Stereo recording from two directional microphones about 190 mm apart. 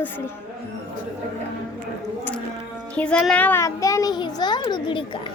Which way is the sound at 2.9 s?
5° left (ahead or behind).